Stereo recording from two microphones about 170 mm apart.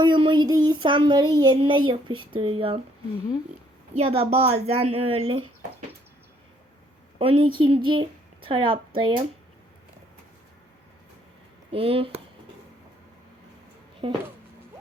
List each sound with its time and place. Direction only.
0.0 s speech: 25° right (ahead or behind)
3.9 s speech: 35° right (ahead or behind)
7.2 s speech: 30° right (ahead or behind)
11.7 s speech: 35° right (ahead or behind)
14.0 s speech: 30° right (ahead or behind)